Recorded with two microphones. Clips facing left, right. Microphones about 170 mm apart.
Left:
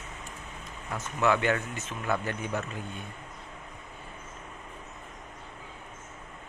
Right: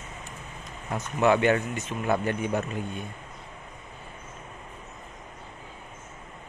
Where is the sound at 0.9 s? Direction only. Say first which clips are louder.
Right 4 dB; 20° right (ahead or behind).